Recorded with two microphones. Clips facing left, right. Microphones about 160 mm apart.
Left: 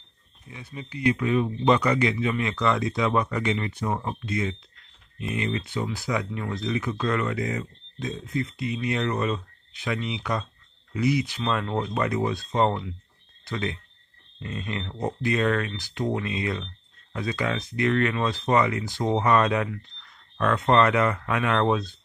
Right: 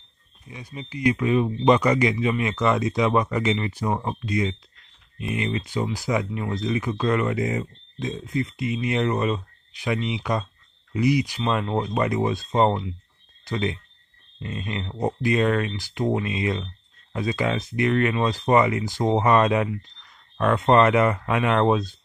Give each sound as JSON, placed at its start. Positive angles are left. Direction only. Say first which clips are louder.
{"t": 0.5, "sound": "speech", "louder": "right 2 dB", "side_deg": -15}